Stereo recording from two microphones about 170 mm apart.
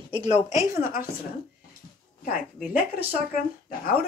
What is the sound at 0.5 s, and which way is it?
Speech, 15° right (ahead or behind).